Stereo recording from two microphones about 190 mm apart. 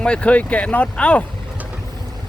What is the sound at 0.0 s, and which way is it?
Speech, 5° left (ahead or behind).